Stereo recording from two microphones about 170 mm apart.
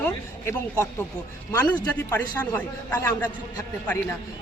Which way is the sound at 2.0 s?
15° left (ahead or behind).